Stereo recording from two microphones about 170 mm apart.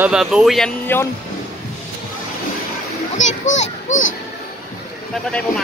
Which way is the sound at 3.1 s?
45° left (ahead or behind).